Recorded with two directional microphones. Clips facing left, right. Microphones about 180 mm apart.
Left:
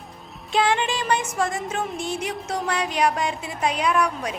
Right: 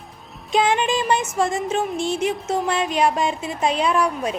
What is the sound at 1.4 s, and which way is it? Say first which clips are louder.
A woman's voice: right 4 dB; 25° right (ahead or behind).